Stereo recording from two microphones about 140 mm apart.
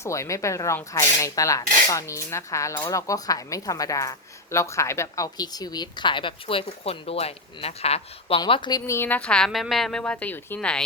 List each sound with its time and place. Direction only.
0.0 s a sound: 20° left (ahead or behind)
4.5 s speech: 20° left (ahead or behind); by 8.4 s 45° left (ahead or behind)
8.4 s speech: 35° left (ahead or behind)
8.8 s a woman's voice: 15° left (ahead or behind)